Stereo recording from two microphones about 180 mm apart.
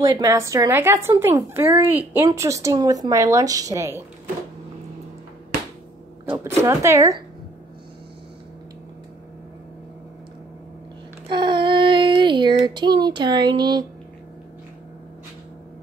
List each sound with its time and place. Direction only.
0.0 s a woman's voice: 20° right (ahead or behind)
6.6 s a woman's voice: 15° right (ahead or behind)
11.2 s child singing: 25° right (ahead or behind)